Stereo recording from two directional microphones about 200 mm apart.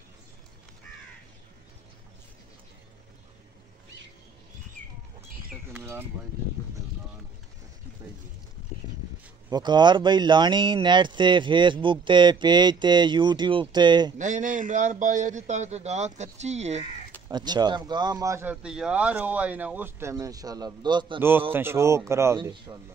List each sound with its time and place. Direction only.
5.5 s a sound: 5° right (ahead or behind)
9.5 s speech: 20° right (ahead or behind)
14.1 s a man's voice: 40° right (ahead or behind)
17.3 s speech: 20° right (ahead or behind)
21.2 s speech: 10° right (ahead or behind)